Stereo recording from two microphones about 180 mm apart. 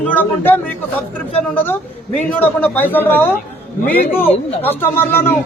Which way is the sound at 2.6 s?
10° left (ahead or behind).